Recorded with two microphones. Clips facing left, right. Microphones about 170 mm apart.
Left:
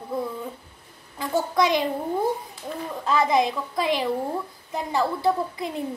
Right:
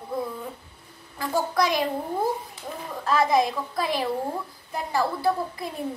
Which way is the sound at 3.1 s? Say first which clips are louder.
Even; 20° left (ahead or behind).